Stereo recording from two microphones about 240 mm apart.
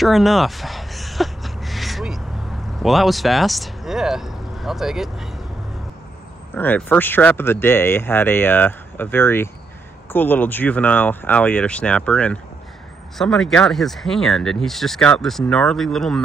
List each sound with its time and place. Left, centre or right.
0.0 s a sound: centre
2.8 s speech: centre
6.5 s speech: centre